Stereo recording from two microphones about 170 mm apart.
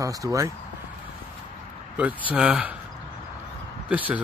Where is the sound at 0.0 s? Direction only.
20° right (ahead or behind).